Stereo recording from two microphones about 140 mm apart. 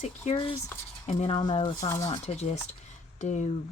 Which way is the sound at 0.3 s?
45° left (ahead or behind).